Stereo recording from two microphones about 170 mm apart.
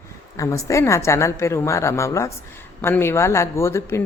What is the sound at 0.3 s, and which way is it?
Speech, 20° left (ahead or behind).